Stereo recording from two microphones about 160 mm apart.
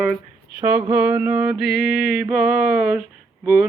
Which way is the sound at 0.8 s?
10° right (ahead or behind).